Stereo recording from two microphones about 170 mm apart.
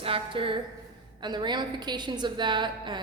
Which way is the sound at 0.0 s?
30° right (ahead or behind).